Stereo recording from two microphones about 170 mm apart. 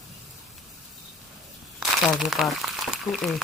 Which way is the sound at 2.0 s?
Centre (ahead or behind).